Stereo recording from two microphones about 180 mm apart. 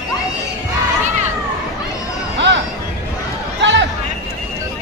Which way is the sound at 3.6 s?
85° right.